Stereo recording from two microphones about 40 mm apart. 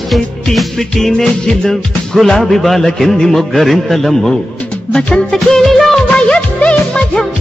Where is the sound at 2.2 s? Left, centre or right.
Centre.